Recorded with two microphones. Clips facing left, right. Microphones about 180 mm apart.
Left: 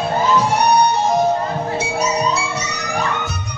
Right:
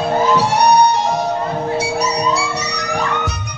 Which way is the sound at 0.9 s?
75° right (ahead or behind).